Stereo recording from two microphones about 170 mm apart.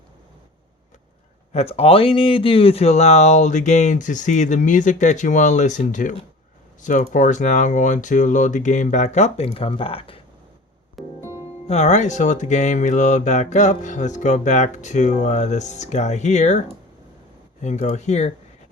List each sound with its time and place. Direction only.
1.5 s speech: 35° left (ahead or behind)
11.2 s music: 15° right (ahead or behind)
11.7 s speech: 40° left (ahead or behind)